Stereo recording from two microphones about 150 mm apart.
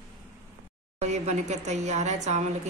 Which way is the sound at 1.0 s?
50° right (ahead or behind).